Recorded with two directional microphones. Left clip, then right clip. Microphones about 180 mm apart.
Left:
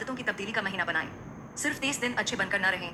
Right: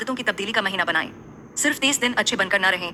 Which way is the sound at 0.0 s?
35° right (ahead or behind).